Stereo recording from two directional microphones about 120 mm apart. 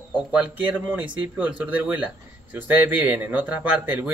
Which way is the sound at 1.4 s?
15° right (ahead or behind).